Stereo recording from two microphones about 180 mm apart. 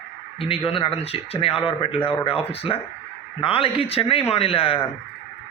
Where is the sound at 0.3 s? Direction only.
30° left (ahead or behind).